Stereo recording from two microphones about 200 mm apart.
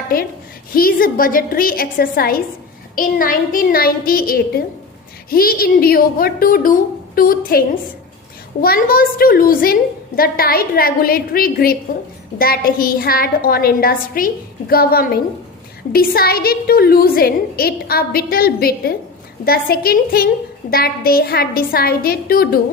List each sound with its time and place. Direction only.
0.7 s a woman's voice: 45° left (ahead or behind)
8.6 s a woman's voice: 45° left (ahead or behind)